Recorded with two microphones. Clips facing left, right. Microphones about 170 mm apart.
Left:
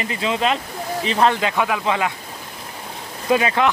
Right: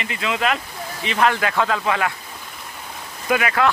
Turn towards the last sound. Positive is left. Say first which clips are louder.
# left 1 dB
turn(degrees=25)  # may be behind; listen again after turning